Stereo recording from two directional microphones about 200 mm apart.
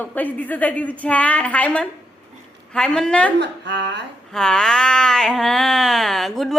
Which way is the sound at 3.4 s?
60° right (ahead or behind).